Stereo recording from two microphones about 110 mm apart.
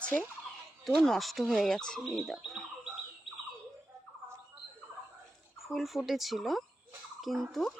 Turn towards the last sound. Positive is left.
turn(degrees=0)  # may be behind; listen again after turning